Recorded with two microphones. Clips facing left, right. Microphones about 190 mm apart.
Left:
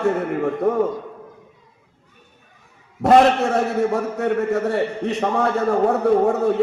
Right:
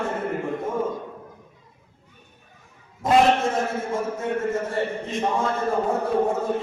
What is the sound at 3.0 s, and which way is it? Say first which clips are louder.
A man's voice: left 4 dB; 70° left (ahead or behind).